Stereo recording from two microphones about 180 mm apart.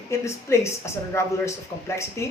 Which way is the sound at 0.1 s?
15° left (ahead or behind).